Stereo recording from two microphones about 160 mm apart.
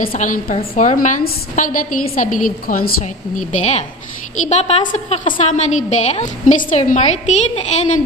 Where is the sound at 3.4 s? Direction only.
45° left (ahead or behind).